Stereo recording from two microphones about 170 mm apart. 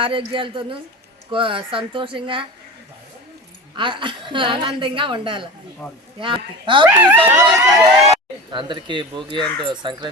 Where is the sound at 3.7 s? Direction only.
30° right (ahead or behind).